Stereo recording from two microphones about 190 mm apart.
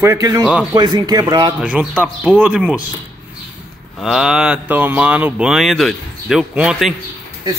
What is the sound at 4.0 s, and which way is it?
Speech, centre (ahead or behind).